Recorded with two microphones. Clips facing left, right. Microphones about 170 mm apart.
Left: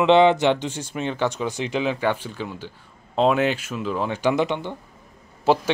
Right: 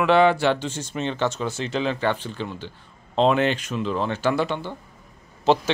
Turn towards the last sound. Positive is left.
turn(degrees=10)  # may be behind; listen again after turning